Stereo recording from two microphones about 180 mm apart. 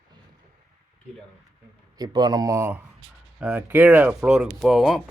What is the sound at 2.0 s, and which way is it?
Speech, 25° right (ahead or behind).